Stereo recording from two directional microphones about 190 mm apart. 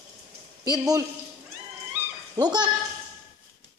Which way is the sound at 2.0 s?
10° right (ahead or behind).